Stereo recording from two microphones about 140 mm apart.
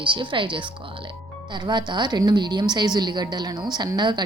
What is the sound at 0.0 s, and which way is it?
A woman's voice, 35° right (ahead or behind).